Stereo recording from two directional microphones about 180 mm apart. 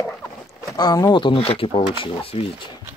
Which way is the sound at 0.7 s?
25° left (ahead or behind).